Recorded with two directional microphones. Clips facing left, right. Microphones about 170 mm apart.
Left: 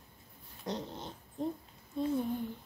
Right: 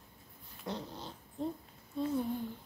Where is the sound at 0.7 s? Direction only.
20° left (ahead or behind).